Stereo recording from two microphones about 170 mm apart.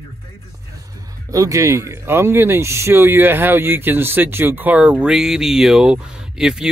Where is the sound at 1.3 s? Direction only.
20° right (ahead or behind).